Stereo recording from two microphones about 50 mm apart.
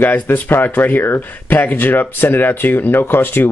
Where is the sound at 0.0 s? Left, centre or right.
Left.